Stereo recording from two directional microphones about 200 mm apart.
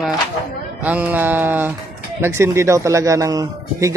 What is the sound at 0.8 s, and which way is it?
Speech, 10° right (ahead or behind).